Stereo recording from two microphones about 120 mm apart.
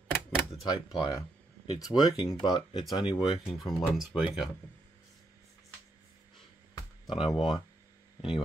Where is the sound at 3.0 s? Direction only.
5° right (ahead or behind).